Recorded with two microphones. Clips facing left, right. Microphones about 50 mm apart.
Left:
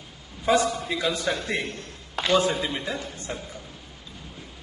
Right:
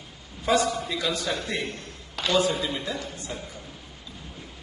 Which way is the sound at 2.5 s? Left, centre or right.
Centre.